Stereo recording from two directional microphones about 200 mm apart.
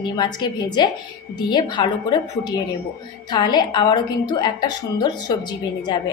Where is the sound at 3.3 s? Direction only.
20° left (ahead or behind).